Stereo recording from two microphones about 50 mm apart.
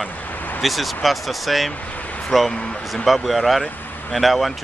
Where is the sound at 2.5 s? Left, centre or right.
Left.